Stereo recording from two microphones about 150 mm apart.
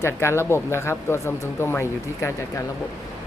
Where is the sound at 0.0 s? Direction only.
15° left (ahead or behind).